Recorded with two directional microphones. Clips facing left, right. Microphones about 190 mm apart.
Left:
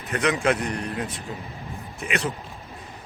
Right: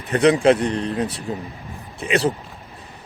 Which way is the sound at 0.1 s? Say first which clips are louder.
Right 8 dB; 30° right (ahead or behind).